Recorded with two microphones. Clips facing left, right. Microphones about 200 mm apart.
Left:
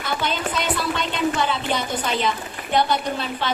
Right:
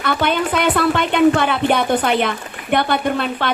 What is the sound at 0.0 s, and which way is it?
A woman's voice, 60° right (ahead or behind).